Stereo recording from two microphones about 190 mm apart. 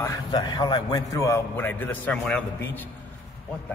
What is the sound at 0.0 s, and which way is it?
A man's voice, 20° left (ahead or behind).